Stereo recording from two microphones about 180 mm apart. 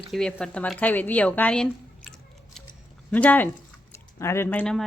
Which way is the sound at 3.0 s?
10° left (ahead or behind).